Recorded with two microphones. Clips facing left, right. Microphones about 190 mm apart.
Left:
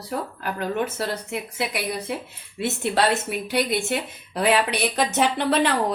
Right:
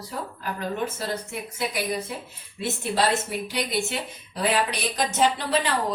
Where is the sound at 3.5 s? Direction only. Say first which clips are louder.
Left 6 dB; 55° left (ahead or behind).